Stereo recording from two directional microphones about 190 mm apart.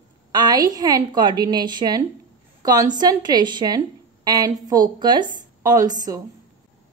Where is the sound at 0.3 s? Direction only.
20° right (ahead or behind).